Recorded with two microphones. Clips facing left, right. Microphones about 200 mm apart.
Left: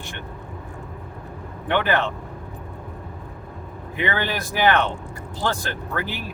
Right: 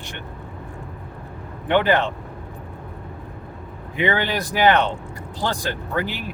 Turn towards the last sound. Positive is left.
turn(degrees=-15)  # may be behind; listen again after turning